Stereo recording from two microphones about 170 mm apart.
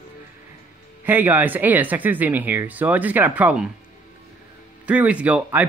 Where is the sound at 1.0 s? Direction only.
10° right (ahead or behind).